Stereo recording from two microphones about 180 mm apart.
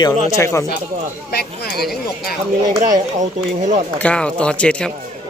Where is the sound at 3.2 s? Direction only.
40° right (ahead or behind).